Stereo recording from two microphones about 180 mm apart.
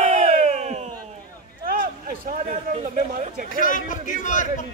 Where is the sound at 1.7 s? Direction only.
50° right (ahead or behind).